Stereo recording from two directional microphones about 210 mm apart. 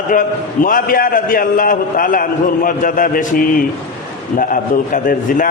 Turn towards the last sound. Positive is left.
turn(degrees=40)  # may be behind; listen again after turning